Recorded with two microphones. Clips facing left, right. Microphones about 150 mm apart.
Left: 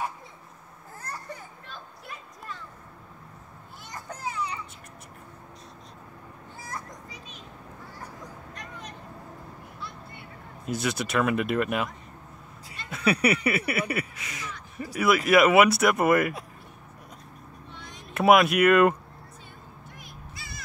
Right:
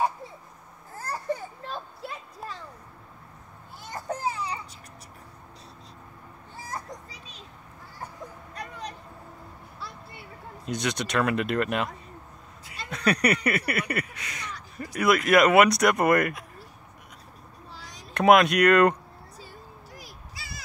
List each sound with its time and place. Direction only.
0.9 s children playing: 30° right (ahead or behind)
3.9 s a sound: 30° right (ahead or behind)
6.7 s children playing: 35° right (ahead or behind)
8.5 s vehicle: 35° right (ahead or behind)
10.7 s speech: 5° left (ahead or behind)
12.9 s speech: 5° left (ahead or behind)
17.6 s a sound: 35° right (ahead or behind)
18.1 s speech: 5° left (ahead or behind)
20.0 s a sound: 35° right (ahead or behind)